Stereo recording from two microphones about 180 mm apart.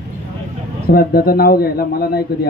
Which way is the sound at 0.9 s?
55° left (ahead or behind).